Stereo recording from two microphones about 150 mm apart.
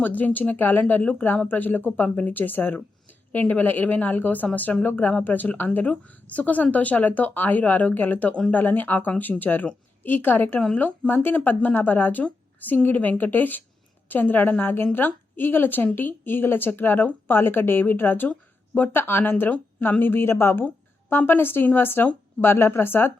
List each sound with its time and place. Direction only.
0.0 s speech: 10° left (ahead or behind)